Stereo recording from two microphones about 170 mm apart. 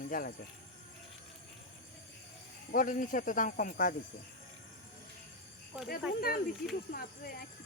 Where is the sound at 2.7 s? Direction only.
55° left (ahead or behind).